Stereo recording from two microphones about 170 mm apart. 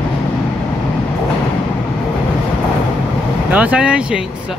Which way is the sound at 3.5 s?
5° right (ahead or behind).